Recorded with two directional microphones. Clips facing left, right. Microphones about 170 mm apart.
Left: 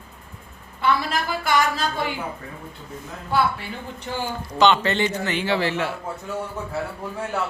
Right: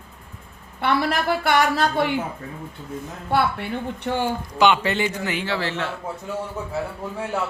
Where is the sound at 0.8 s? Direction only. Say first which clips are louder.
Right 1 dB; 65° right (ahead or behind).